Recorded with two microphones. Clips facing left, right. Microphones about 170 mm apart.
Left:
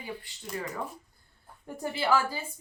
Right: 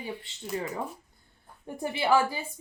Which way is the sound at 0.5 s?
25° right (ahead or behind).